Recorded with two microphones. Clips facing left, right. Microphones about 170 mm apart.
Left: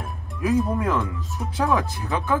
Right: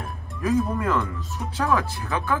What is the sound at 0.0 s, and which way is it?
Music, centre (ahead or behind).